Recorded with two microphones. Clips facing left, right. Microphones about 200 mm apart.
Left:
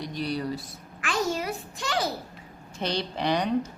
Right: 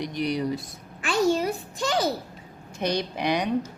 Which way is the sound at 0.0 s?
15° right (ahead or behind).